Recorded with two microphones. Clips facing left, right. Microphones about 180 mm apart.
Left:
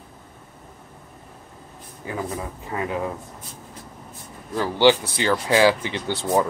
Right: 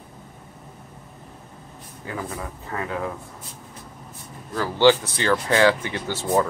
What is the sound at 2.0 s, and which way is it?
Speech, 15° left (ahead or behind).